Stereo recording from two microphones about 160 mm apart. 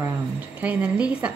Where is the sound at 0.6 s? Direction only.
10° right (ahead or behind).